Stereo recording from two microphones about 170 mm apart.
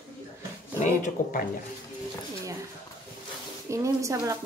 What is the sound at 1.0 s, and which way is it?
Speech, 55° left (ahead or behind).